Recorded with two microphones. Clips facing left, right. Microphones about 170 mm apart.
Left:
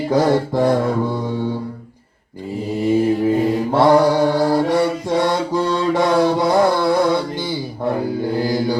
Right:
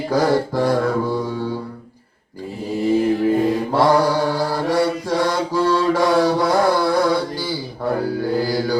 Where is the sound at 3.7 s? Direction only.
20° left (ahead or behind).